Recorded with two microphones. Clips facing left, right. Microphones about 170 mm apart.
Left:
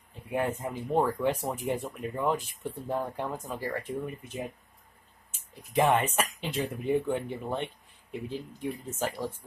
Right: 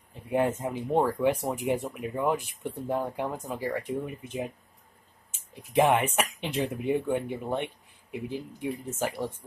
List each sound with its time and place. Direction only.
0.3 s speech: 20° right (ahead or behind)
5.8 s speech: 15° right (ahead or behind)